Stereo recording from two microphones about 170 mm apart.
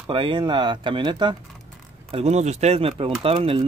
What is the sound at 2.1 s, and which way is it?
Speech, 40° right (ahead or behind).